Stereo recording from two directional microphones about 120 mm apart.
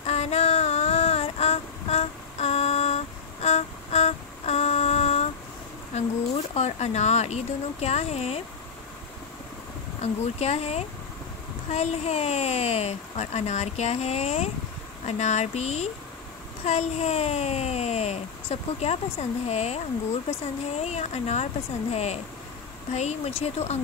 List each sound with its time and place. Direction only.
0.0 s child singing: 65° left (ahead or behind)
5.9 s speech: 65° left (ahead or behind)
10.2 s speech: 65° left (ahead or behind)
20.8 s speech: 65° left (ahead or behind)